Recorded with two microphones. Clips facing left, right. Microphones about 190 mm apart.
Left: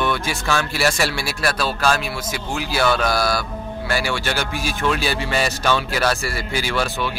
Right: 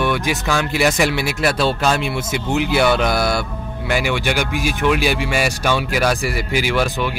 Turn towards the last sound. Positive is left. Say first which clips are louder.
# right 4 dB
turn(degrees=-15)  # may be behind; listen again after turning